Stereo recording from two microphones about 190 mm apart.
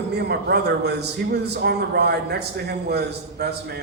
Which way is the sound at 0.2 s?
55° right (ahead or behind).